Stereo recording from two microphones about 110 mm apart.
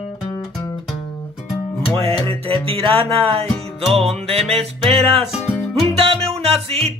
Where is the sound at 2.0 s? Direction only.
60° right (ahead or behind).